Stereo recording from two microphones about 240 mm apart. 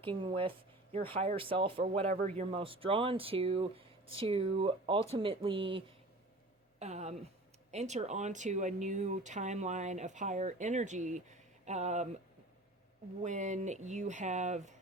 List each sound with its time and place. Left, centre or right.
0.0 s a woman's voice: right
13.2 s speech: right